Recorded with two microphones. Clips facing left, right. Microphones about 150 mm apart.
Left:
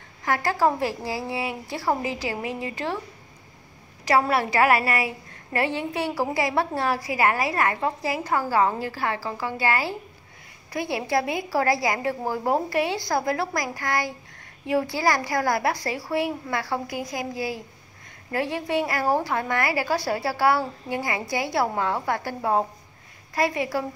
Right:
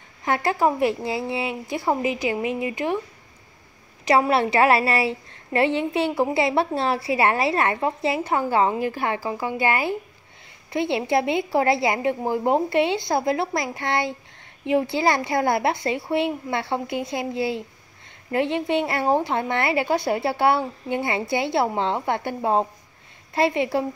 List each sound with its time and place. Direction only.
0.2 s a woman's voice: 20° right (ahead or behind)
4.0 s a woman's voice: 20° right (ahead or behind)